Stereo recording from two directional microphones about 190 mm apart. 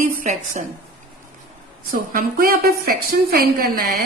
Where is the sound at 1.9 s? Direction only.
50° right (ahead or behind).